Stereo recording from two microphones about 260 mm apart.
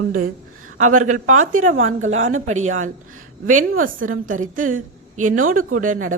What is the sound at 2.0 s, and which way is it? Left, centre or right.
A woman's voice, right.